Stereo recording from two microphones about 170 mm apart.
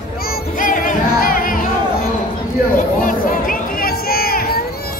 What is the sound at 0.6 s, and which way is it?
Music, 50° left (ahead or behind).